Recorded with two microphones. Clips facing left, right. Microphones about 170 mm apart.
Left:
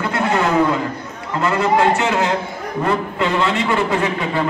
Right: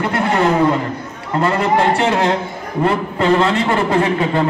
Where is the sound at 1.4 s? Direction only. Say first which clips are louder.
Right 1 dB; 35° right (ahead or behind).